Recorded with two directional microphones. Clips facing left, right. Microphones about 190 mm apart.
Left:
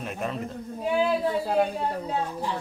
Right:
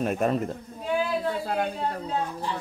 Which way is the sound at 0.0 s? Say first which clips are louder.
Right 7 dB; 45° right (ahead or behind).